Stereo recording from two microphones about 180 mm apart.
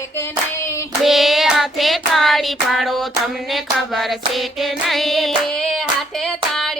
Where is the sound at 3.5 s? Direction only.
Centre (ahead or behind).